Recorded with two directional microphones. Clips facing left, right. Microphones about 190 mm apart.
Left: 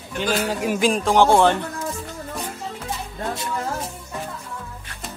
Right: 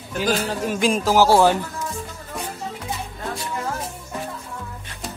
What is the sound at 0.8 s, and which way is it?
Speech, centre (ahead or behind).